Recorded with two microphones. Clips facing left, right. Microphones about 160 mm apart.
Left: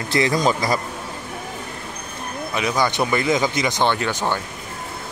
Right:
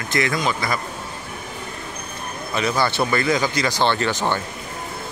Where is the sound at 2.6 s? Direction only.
15° left (ahead or behind).